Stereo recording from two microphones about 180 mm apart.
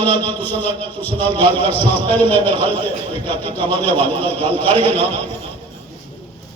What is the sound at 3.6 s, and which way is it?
A man's voice, 10° left (ahead or behind).